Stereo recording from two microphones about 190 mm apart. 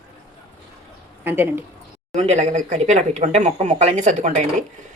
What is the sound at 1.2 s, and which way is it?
Speech, 10° right (ahead or behind).